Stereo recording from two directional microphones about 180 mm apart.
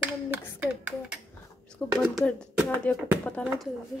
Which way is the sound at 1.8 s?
10° left (ahead or behind).